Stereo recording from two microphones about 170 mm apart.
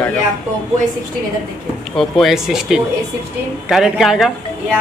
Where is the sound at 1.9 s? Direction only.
Centre (ahead or behind).